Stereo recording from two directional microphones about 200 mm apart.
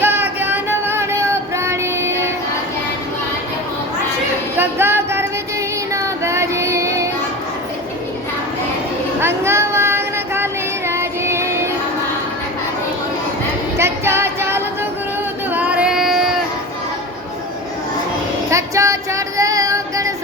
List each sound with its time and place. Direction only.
0.0 s music: 10° right (ahead or behind)
4.5 s a sound: 10° right (ahead or behind)
5.9 s child singing: 15° right (ahead or behind)
9.2 s child singing: 15° right (ahead or behind)
13.7 s female singing: 10° right (ahead or behind)
15.5 s child singing: 5° right (ahead or behind)
18.5 s child singing: 15° right (ahead or behind)